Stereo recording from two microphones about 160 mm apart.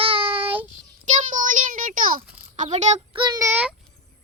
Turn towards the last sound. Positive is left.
turn(degrees=-10)  # may be behind; listen again after turning